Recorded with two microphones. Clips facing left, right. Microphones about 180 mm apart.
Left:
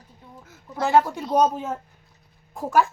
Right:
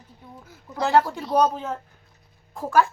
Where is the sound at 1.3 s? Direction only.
20° left (ahead or behind).